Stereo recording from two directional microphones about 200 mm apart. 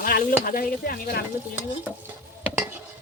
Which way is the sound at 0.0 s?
45° left (ahead or behind).